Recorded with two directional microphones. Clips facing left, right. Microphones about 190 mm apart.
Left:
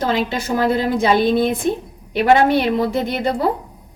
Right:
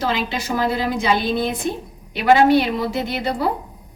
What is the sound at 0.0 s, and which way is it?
A woman's voice, 50° left (ahead or behind).